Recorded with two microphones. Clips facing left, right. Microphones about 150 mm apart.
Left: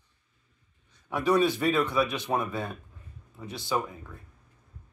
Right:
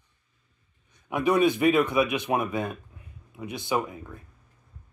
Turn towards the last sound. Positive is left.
turn(degrees=-15)  # may be behind; listen again after turning